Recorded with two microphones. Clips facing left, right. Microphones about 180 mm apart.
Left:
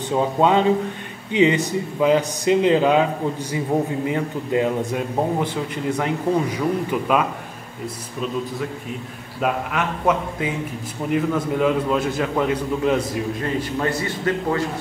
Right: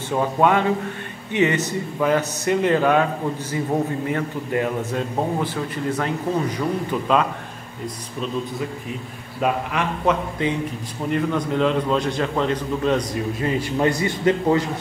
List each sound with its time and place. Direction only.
0.1 s a man's voice: 20° left (ahead or behind)
13.4 s a man's voice: 15° right (ahead or behind)